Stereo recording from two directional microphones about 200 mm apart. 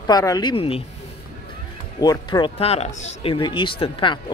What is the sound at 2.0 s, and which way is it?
Speech, 20° left (ahead or behind).